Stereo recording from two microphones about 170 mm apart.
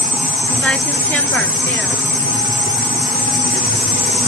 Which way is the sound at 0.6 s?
5° left (ahead or behind).